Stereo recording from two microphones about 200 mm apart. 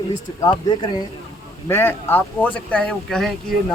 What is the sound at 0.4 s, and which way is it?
Speech, 20° left (ahead or behind).